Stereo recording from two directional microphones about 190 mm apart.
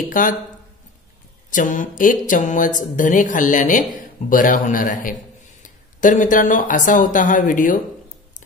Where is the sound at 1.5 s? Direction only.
40° left (ahead or behind).